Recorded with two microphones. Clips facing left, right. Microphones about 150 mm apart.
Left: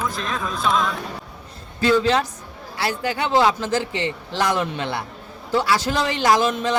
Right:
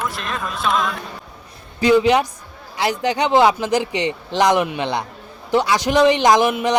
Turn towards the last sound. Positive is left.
turn(degrees=-15)  # may be behind; listen again after turning